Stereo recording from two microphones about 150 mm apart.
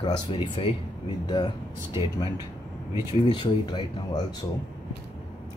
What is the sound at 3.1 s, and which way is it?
Speech, 30° left (ahead or behind).